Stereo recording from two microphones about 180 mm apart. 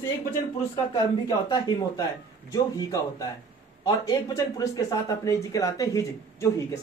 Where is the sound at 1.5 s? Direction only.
20° left (ahead or behind).